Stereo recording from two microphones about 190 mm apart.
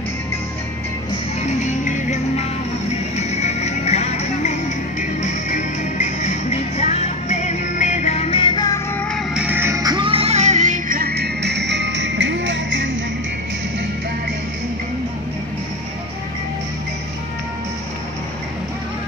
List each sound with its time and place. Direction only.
1.6 s music: 40° left (ahead or behind); by 8.8 s 20° left (ahead or behind)
9.1 s music: 5° right (ahead or behind); by 12.9 s 75° right (ahead or behind)